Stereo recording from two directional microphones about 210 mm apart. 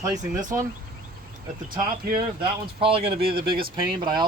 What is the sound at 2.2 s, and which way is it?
Speech, 25° right (ahead or behind).